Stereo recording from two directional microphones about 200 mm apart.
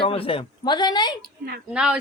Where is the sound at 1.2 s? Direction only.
50° right (ahead or behind).